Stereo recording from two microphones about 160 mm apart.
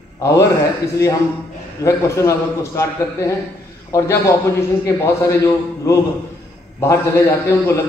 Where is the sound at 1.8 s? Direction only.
20° left (ahead or behind).